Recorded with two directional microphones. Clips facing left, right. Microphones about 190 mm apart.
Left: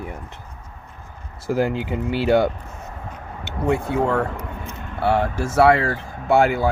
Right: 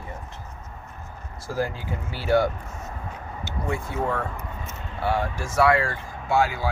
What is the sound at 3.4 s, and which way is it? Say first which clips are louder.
Speech: left 8 dB; 65° left (ahead or behind).